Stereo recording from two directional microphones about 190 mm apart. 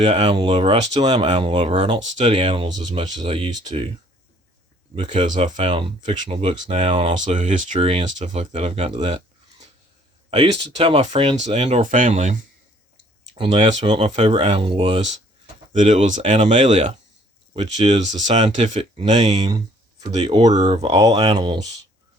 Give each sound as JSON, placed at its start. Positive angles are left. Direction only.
{"t": 0.0, "sound": "speech", "side_deg": -30}
{"t": 4.9, "sound": "speech", "side_deg": -25}
{"t": 13.8, "sound": "speech", "side_deg": -25}
{"t": 15.7, "sound": "speech", "side_deg": -40}